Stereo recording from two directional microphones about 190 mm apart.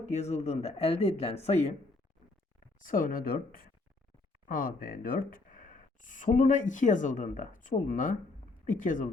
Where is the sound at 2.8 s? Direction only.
45° left (ahead or behind).